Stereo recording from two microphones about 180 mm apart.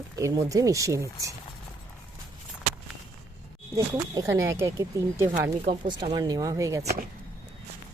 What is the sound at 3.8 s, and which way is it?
Speech, 20° right (ahead or behind).